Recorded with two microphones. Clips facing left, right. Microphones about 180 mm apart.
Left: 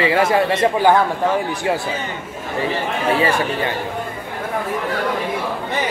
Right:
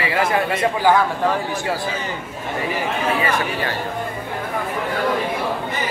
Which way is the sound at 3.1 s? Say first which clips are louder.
Left 3 dB; 30° left (ahead or behind).